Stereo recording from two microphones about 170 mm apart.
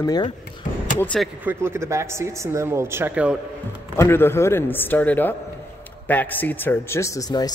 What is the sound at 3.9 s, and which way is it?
A man's voice, 15° left (ahead or behind).